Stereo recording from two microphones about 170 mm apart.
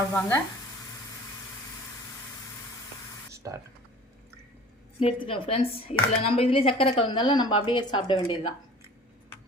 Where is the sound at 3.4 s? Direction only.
20° right (ahead or behind).